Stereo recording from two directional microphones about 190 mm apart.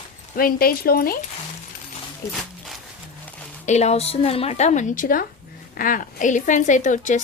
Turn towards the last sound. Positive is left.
turn(degrees=40)  # may be behind; listen again after turning